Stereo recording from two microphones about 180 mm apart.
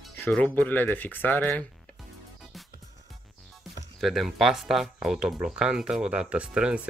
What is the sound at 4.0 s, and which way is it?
Speech, centre (ahead or behind).